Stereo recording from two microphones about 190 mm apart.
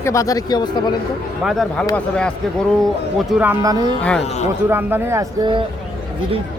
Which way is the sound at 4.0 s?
5° left (ahead or behind).